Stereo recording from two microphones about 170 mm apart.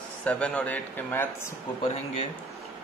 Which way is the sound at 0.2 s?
5° left (ahead or behind).